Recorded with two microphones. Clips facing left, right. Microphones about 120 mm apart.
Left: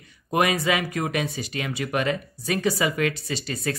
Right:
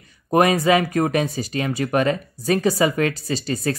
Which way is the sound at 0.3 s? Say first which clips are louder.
Right 6 dB; 40° right (ahead or behind).